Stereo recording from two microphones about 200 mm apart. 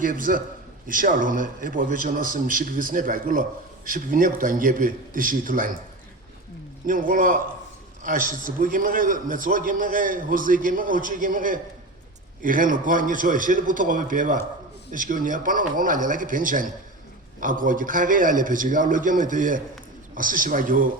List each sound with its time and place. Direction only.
0.0 s a man's voice: 45° right (ahead or behind)
6.8 s a man's voice: 40° right (ahead or behind)